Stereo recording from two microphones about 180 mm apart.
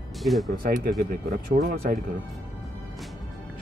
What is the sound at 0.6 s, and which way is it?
Speech, 55° right (ahead or behind).